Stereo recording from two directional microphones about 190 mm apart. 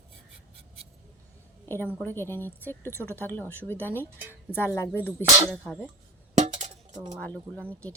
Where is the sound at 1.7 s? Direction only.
10° left (ahead or behind).